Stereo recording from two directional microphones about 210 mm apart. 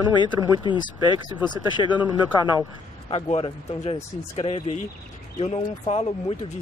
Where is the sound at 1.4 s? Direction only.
20° left (ahead or behind).